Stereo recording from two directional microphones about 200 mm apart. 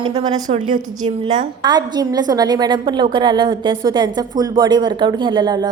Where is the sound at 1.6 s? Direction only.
20° right (ahead or behind).